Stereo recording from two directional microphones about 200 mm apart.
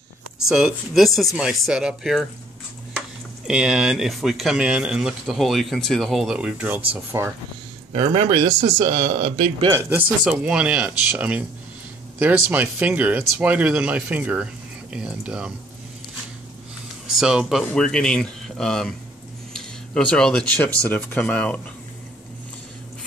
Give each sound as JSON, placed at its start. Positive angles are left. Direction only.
{"t": 0.5, "sound": "speech", "side_deg": 0}
{"t": 3.4, "sound": "speech", "side_deg": -5}
{"t": 7.9, "sound": "speech", "side_deg": -30}
{"t": 8.4, "sound": "speech", "side_deg": -20}
{"t": 17.1, "sound": "speech", "side_deg": 0}